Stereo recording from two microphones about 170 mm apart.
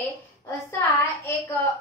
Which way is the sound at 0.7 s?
15° left (ahead or behind).